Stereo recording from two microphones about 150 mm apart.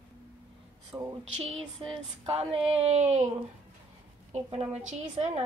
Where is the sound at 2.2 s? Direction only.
45° right (ahead or behind).